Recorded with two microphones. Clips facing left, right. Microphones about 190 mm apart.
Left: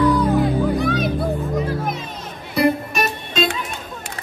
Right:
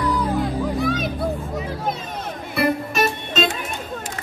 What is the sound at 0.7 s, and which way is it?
Music, centre (ahead or behind).